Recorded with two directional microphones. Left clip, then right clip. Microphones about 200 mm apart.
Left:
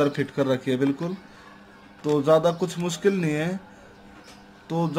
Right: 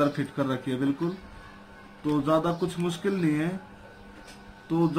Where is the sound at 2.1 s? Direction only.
60° left (ahead or behind).